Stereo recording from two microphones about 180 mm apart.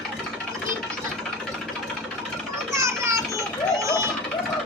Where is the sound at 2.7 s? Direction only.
15° right (ahead or behind).